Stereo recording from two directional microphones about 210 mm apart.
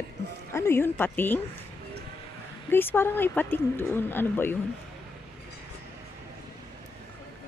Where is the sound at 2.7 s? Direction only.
10° left (ahead or behind).